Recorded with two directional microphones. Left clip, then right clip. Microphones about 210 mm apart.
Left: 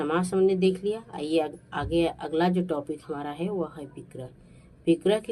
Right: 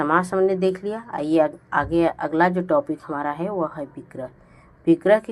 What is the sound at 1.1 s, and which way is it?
Speech, 50° right (ahead or behind).